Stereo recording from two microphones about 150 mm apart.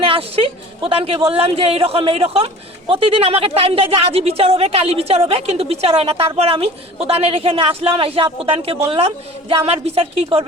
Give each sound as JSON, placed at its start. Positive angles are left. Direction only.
{"t": 0.0, "sound": "a woman's voice", "side_deg": -40}